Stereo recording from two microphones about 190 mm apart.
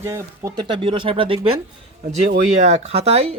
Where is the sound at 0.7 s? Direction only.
25° right (ahead or behind).